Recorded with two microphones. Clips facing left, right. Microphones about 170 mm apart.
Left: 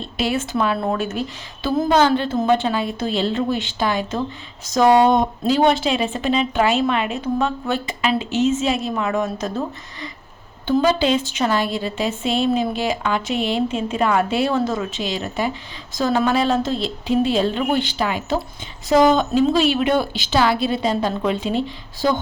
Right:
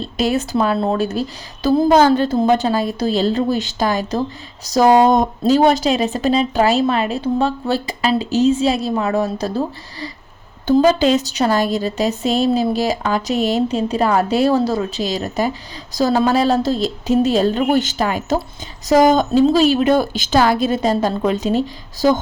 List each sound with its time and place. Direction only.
0.0 s a woman's voice: 40° right (ahead or behind)